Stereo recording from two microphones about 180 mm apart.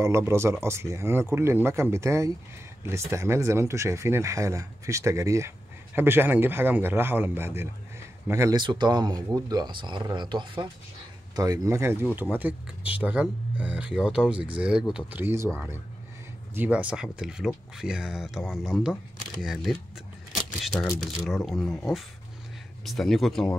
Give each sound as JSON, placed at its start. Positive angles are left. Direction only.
{"t": 0.0, "sound": "speech", "side_deg": -15}
{"t": 22.8, "sound": "speech", "side_deg": 0}